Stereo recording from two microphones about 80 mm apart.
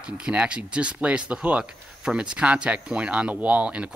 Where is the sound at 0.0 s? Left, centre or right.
Centre.